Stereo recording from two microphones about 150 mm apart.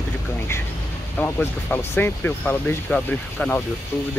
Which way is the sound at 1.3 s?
15° left (ahead or behind).